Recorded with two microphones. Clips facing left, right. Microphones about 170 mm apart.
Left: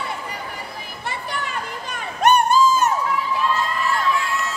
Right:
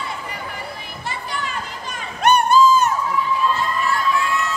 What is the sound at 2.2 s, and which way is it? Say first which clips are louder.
Crowd: right 1 dB; 45° left (ahead or behind).